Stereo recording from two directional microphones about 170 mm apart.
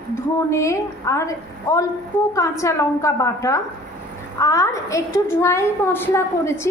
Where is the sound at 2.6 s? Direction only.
15° left (ahead or behind).